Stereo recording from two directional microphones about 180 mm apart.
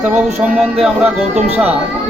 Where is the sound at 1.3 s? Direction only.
35° right (ahead or behind).